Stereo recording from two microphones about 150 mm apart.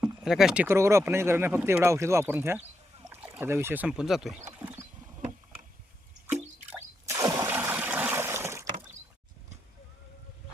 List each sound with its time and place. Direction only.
0.0 s speech: 5° right (ahead or behind)
4.5 s mechanisms: 15° right (ahead or behind)
6.2 s water: 15° right (ahead or behind)